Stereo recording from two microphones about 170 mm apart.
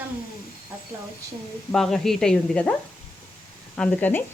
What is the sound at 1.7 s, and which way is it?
Sizzle, centre (ahead or behind).